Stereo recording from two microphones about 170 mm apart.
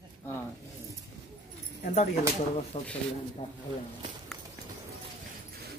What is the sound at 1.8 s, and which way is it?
Speech, 45° left (ahead or behind).